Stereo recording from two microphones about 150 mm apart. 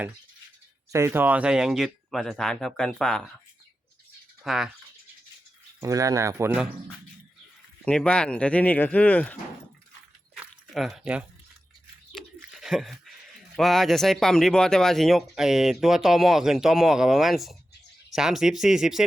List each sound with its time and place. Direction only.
0.9 s speech: 15° right (ahead or behind); by 3.3 s 5° left (ahead or behind)
4.4 s speech: centre (ahead or behind)
5.8 s speech: 20° right (ahead or behind)
7.9 s speech: 5° left (ahead or behind)
10.3 s a sound: centre (ahead or behind)
12.5 s a sound: centre (ahead or behind)
13.6 s speech: centre (ahead or behind)